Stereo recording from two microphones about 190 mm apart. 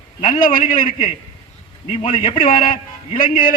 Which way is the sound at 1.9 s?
25° left (ahead or behind).